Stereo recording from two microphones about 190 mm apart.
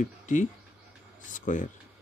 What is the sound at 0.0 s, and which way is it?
Speech, 40° left (ahead or behind).